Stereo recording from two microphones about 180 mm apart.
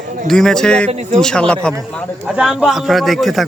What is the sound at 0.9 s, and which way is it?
Speech, 40° right (ahead or behind).